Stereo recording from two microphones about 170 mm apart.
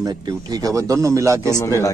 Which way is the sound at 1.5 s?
20° left (ahead or behind).